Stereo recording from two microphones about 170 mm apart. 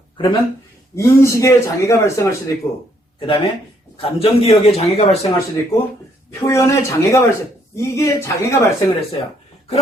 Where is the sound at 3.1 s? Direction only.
30° left (ahead or behind).